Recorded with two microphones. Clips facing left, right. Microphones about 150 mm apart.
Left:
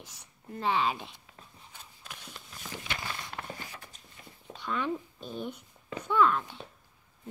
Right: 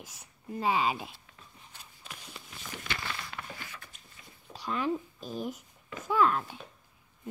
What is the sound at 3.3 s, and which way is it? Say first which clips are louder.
Walk: left 2 dB; 35° left (ahead or behind).